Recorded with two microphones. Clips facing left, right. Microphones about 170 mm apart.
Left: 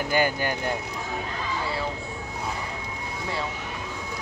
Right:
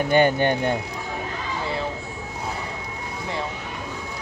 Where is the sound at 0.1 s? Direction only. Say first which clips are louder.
Right 7 dB; 25° right (ahead or behind).